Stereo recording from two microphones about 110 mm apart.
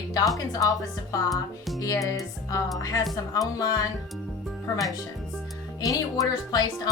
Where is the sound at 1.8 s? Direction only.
30° left (ahead or behind).